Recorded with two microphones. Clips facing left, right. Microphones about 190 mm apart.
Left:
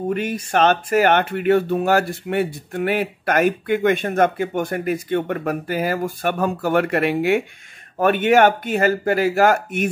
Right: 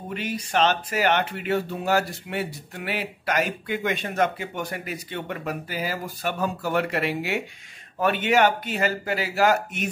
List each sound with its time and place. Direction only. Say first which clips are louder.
0.1 s speech: left 2 dB; 50° left (ahead or behind)